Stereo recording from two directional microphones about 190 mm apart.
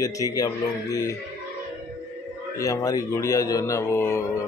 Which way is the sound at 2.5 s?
15° left (ahead or behind).